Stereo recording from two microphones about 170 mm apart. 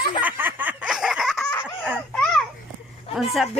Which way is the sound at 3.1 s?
Centre (ahead or behind).